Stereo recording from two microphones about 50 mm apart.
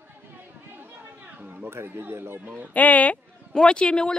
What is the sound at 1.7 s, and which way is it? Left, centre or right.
Speech, right.